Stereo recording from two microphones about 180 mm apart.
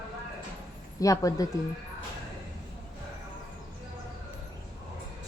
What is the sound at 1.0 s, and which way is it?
Speech, 20° left (ahead or behind).